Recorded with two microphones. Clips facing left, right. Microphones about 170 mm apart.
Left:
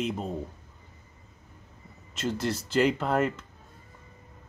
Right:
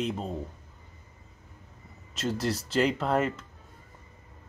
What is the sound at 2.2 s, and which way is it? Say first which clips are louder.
Speech: even; centre (ahead or behind).